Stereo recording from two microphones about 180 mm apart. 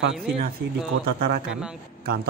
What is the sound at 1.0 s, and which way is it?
Speech, 55° right (ahead or behind).